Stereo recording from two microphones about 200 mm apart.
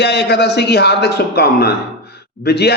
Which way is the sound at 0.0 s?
55° left (ahead or behind).